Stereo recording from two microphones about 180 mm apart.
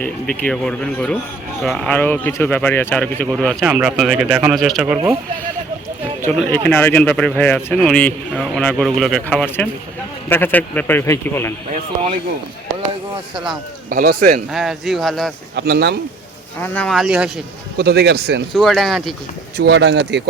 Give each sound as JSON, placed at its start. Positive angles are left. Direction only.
{"t": 0.0, "sound": "speech", "side_deg": 5}
{"t": 6.3, "sound": "speech", "side_deg": 10}
{"t": 13.9, "sound": "a man's voice", "side_deg": -55}
{"t": 14.5, "sound": "speech", "side_deg": 0}
{"t": 15.5, "sound": "speech", "side_deg": -65}
{"t": 16.6, "sound": "speech", "side_deg": 10}
{"t": 17.7, "sound": "a man's voice", "side_deg": -65}
{"t": 18.5, "sound": "speech", "side_deg": 0}
{"t": 19.5, "sound": "speech", "side_deg": -70}